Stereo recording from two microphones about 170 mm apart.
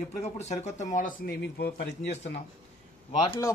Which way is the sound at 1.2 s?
70° left (ahead or behind).